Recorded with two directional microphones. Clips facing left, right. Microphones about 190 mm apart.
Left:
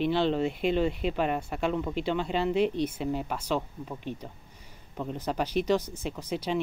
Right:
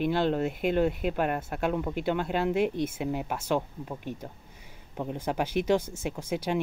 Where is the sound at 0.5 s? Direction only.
50° right (ahead or behind).